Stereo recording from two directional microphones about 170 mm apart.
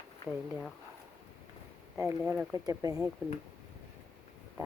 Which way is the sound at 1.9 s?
15° right (ahead or behind).